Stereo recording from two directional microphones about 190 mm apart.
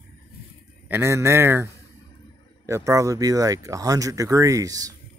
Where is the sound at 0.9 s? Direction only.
15° right (ahead or behind).